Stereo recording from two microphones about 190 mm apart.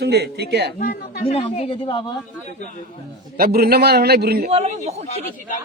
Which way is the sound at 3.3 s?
55° right (ahead or behind).